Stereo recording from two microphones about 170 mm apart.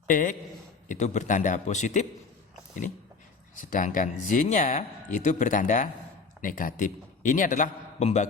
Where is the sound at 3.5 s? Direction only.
50° left (ahead or behind).